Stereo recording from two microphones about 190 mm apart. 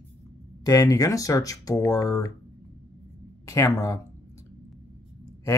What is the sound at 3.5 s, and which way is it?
Speech, 15° left (ahead or behind).